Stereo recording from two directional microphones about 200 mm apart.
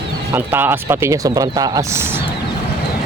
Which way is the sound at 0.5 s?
10° right (ahead or behind).